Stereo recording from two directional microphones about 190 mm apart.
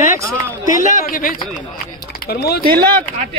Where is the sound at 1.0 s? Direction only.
45° left (ahead or behind).